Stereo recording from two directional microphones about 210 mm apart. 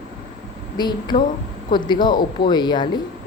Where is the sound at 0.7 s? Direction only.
20° left (ahead or behind).